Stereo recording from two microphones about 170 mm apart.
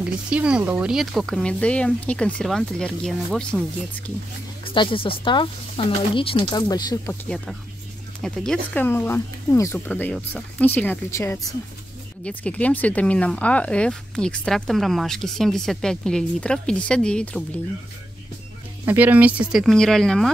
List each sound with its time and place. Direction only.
0.0 s speech: 5° right (ahead or behind)
4.6 s speech: 30° left (ahead or behind)
7.2 s speech: 5° left (ahead or behind)
18.9 s speech: 10° right (ahead or behind)